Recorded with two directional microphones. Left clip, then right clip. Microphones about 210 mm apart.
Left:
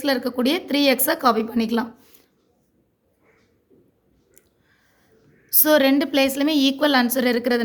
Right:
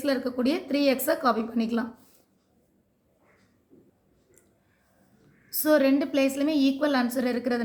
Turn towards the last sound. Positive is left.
turn(degrees=40)  # may be behind; listen again after turning